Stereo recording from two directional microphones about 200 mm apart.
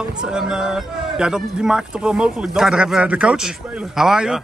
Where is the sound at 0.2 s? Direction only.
5° right (ahead or behind).